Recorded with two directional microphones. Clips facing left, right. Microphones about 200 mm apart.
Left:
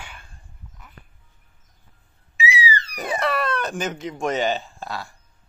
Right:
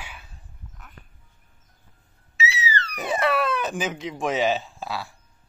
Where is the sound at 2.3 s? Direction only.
15° left (ahead or behind).